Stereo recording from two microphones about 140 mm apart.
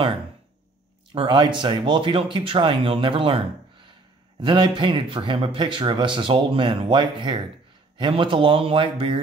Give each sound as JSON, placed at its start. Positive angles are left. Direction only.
{"t": 1.1, "sound": "speech", "side_deg": -35}